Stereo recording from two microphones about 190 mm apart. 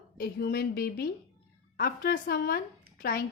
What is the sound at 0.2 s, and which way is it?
Speech, 55° left (ahead or behind).